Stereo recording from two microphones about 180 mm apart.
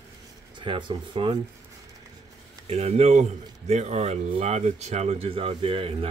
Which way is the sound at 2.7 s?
35° right (ahead or behind).